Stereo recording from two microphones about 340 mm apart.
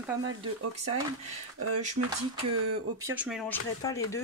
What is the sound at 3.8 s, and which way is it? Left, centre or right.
Speech, centre.